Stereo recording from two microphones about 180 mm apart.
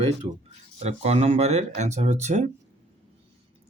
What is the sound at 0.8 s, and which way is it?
Speech, 35° right (ahead or behind).